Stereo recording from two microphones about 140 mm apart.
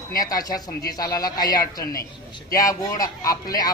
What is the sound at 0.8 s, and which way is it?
A man's voice, 25° left (ahead or behind).